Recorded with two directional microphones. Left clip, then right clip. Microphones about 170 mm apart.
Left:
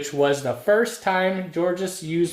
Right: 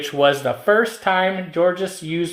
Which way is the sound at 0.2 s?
20° right (ahead or behind).